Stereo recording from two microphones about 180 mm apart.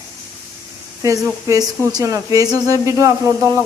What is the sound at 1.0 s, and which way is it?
Speech, 15° right (ahead or behind).